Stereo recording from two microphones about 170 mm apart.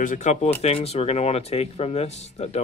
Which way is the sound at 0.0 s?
45° left (ahead or behind).